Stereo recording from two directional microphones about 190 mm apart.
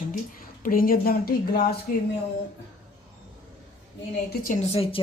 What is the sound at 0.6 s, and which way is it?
Speech, 50° left (ahead or behind).